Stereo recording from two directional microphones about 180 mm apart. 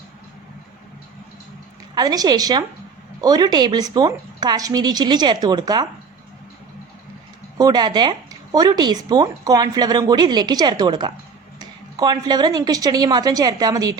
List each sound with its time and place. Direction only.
2.0 s speech: 20° right (ahead or behind)
7.6 s speech: 20° right (ahead or behind)